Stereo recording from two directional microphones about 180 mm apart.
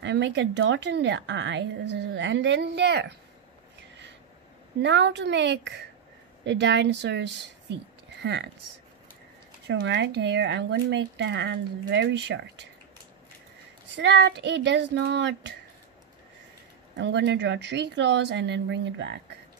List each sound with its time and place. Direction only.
0.0 s a woman's voice: 80° right
4.7 s a woman's voice: 75° right (ahead or behind)
9.7 s a woman's voice: 90° right
13.9 s a woman's voice: 75° right (ahead or behind)
16.9 s a woman's voice: 75° right (ahead or behind)